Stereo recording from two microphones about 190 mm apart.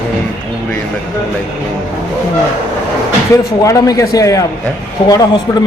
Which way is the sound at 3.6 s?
15° left (ahead or behind).